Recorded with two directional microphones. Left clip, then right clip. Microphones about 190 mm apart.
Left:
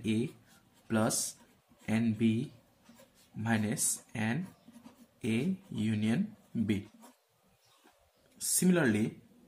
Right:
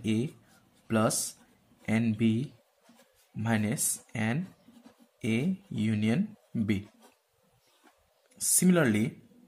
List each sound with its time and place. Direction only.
0.0 s speech: 25° right (ahead or behind)
3.4 s speech: 25° right (ahead or behind)
8.4 s speech: 30° right (ahead or behind)